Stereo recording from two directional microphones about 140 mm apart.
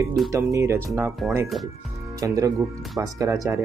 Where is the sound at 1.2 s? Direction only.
Centre (ahead or behind).